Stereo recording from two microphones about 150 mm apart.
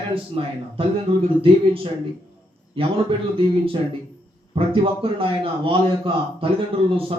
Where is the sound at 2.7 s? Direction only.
35° right (ahead or behind).